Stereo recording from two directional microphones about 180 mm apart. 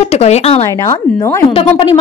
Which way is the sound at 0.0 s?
35° left (ahead or behind).